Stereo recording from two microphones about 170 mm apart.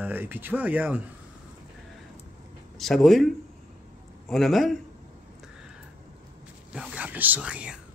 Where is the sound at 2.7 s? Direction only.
Centre (ahead or behind).